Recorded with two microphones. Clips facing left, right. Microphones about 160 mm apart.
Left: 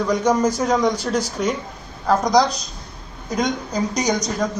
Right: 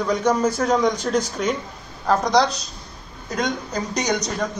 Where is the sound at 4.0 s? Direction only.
5° right (ahead or behind).